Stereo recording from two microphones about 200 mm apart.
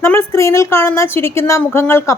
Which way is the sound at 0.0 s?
10° left (ahead or behind).